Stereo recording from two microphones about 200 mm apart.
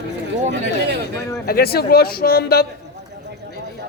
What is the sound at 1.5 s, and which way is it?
Speech, 50° left (ahead or behind).